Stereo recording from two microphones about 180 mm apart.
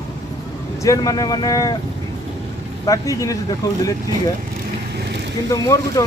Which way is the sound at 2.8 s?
20° left (ahead or behind).